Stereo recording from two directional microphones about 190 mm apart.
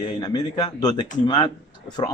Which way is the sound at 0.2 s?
20° left (ahead or behind).